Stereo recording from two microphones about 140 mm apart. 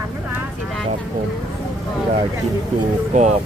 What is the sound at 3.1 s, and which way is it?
Speech, 60° right (ahead or behind).